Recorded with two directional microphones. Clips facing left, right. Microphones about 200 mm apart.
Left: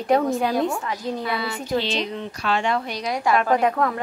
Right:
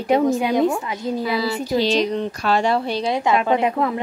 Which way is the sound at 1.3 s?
25° right (ahead or behind).